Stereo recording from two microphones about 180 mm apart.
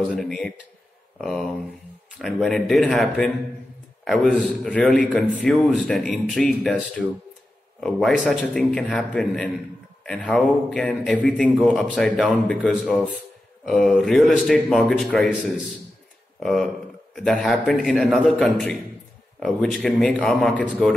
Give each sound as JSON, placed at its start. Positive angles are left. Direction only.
{"t": 0.0, "sound": "a man's voice", "side_deg": 5}